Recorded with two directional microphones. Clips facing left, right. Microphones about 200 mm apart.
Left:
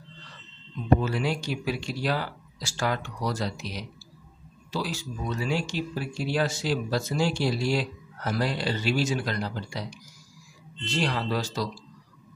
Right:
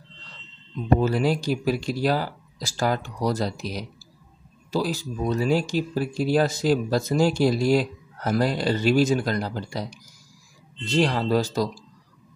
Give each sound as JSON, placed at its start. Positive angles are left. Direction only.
{"t": 1.0, "sound": "speech", "side_deg": -40}
{"t": 11.0, "sound": "speech", "side_deg": -45}